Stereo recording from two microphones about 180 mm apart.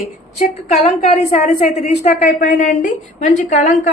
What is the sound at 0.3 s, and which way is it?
A woman's voice, 40° left (ahead or behind).